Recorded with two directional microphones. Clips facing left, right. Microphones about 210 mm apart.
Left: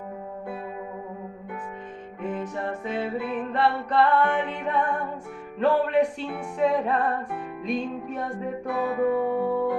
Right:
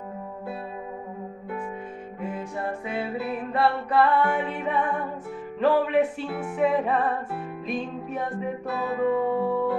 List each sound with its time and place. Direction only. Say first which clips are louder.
2.2 s music: left 2 dB; 10° right (ahead or behind)
8.6 s music: left 2 dB; 15° left (ahead or behind)
9.4 s music: even; centre (ahead or behind)